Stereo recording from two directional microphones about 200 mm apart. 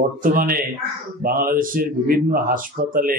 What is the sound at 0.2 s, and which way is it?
A man's voice, 45° right (ahead or behind).